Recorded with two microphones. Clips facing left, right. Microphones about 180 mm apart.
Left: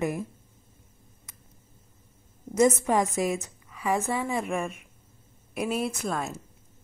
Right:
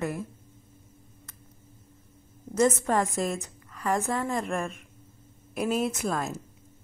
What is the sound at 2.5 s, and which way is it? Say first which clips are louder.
A woman's voice: left 2 dB; 10° left (ahead or behind).